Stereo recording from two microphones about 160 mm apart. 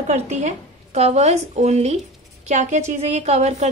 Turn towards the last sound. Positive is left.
turn(degrees=-45)  # may be behind; listen again after turning